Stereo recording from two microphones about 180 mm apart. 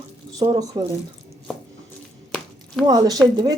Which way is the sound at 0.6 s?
20° right (ahead or behind).